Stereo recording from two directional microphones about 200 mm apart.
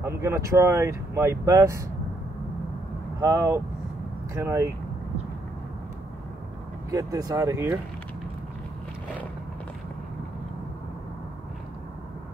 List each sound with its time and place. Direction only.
0.0 s speech: 15° right (ahead or behind)
3.2 s speech: 15° right (ahead or behind)
6.9 s speech: 15° right (ahead or behind)